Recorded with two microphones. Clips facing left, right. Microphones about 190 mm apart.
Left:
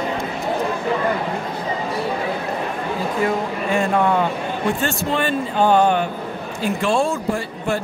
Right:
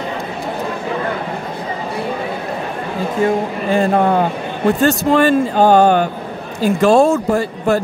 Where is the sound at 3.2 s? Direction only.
35° right (ahead or behind).